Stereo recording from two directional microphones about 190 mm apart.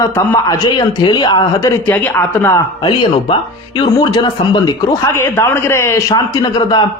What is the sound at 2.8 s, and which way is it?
Speech, 25° left (ahead or behind).